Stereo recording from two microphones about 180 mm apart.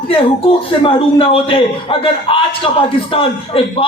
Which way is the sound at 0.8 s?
30° left (ahead or behind).